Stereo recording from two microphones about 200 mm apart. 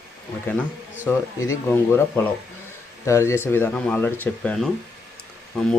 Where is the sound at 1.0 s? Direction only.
15° left (ahead or behind).